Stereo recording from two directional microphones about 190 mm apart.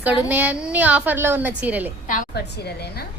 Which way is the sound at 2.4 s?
60° left (ahead or behind).